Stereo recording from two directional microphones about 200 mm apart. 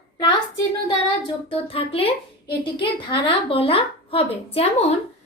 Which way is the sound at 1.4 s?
30° left (ahead or behind).